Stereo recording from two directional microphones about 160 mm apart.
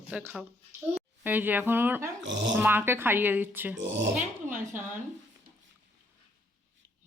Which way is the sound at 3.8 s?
90° right.